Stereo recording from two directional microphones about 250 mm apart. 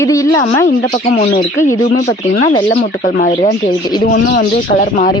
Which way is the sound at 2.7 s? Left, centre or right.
Left.